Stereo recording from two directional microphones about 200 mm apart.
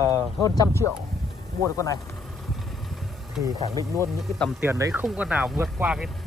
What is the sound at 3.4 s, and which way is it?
Speech, 15° right (ahead or behind).